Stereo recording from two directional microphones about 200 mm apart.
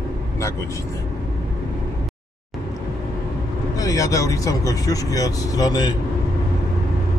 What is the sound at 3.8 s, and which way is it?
Speech, 15° left (ahead or behind).